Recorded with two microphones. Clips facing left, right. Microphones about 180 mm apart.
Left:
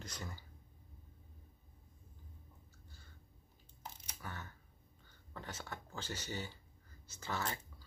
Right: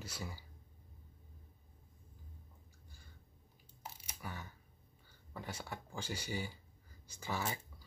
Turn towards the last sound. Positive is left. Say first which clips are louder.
# right 1 dB
turn(degrees=-10)  # may be behind; listen again after turning